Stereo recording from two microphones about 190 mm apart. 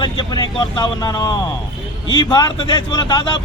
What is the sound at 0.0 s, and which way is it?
Speech, 25° left (ahead or behind).